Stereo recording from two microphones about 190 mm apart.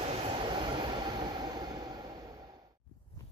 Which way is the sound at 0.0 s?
25° right (ahead or behind).